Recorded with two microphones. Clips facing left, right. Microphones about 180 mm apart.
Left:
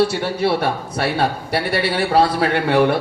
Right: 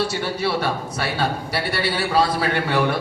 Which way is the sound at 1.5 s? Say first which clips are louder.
Left 4 dB; 60° left (ahead or behind).